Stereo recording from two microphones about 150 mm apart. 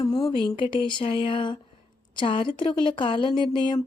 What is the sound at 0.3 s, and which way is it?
Speech, 35° left (ahead or behind).